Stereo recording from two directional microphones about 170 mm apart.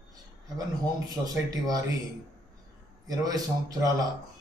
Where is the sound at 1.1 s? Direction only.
20° right (ahead or behind).